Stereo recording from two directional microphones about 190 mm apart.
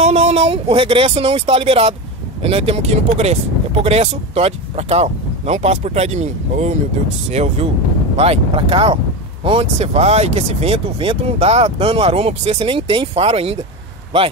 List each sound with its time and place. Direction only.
0.0 s speech: 35° right (ahead or behind)